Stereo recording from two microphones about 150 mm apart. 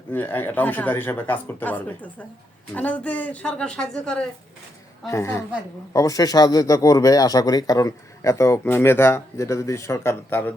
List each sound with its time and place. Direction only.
0.1 s speech: 15° left (ahead or behind)
5.0 s speech: 20° left (ahead or behind)